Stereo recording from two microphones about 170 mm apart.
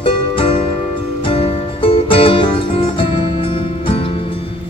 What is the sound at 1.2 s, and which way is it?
Music, 30° left (ahead or behind).